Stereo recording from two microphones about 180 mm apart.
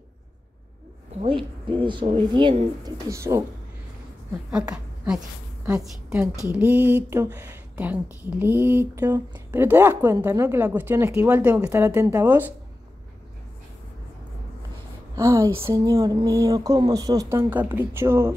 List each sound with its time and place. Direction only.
1.2 s speech: 30° right (ahead or behind)
5.7 s a woman's voice: 5° right (ahead or behind)
15.1 s speech: 20° right (ahead or behind)